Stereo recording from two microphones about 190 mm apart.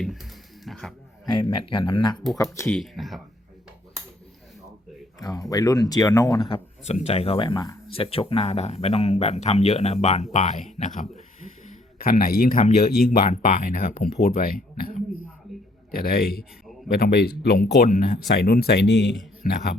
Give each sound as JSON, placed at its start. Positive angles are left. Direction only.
{"t": 0.0, "sound": "a sound", "side_deg": 0}
{"t": 1.2, "sound": "speech", "side_deg": 25}
{"t": 2.6, "sound": "speech", "side_deg": 0}
{"t": 5.2, "sound": "speech", "side_deg": 20}
{"t": 12.9, "sound": "speech", "side_deg": 0}
{"t": 13.3, "sound": "speech", "side_deg": 45}